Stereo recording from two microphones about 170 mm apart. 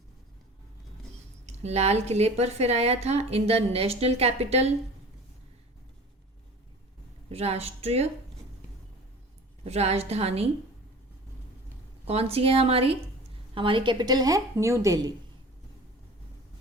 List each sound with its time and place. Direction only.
1.5 s a woman's voice: 40° right (ahead or behind)
7.3 s a woman's voice: 35° right (ahead or behind)
9.6 s a woman's voice: 40° right (ahead or behind)
12.0 s a woman's voice: 35° right (ahead or behind); by 15.1 s 20° right (ahead or behind)